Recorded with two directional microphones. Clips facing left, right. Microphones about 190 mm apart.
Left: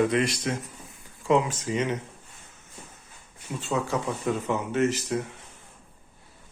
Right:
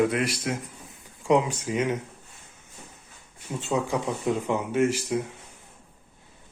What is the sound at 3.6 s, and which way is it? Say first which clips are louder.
Speech: right 1 dB; 15° right (ahead or behind).